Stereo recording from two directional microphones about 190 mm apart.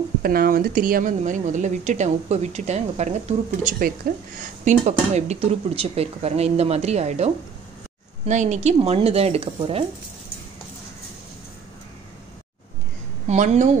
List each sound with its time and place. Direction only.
0.2 s a woman's voice: 50° right (ahead or behind); by 7.2 s 35° right (ahead or behind)
8.3 s a woman's voice: 40° right (ahead or behind)
13.3 s a woman's voice: 40° right (ahead or behind)